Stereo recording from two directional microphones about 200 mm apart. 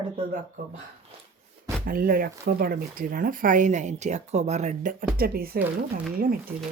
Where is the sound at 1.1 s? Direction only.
30° right (ahead or behind).